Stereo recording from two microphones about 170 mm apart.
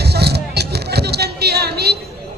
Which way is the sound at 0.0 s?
75° right (ahead or behind).